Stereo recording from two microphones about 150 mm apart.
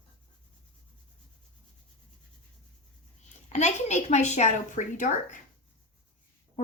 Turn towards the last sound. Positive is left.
turn(degrees=55)  # may be behind; listen again after turning